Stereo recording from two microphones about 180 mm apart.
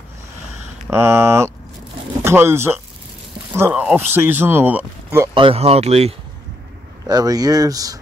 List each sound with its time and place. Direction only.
0.8 s speech: 15° right (ahead or behind)
5.3 s speech: 30° right (ahead or behind)
7.1 s speech: 20° right (ahead or behind)